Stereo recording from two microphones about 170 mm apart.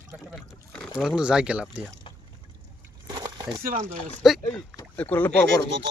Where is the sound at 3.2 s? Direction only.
25° right (ahead or behind).